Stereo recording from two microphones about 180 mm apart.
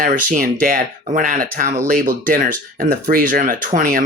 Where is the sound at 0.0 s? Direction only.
45° right (ahead or behind).